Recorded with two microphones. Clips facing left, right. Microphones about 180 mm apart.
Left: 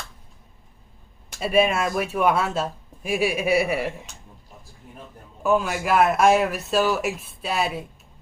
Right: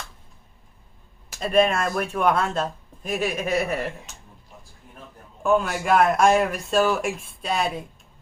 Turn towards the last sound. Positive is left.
turn(degrees=5)  # may be behind; listen again after turning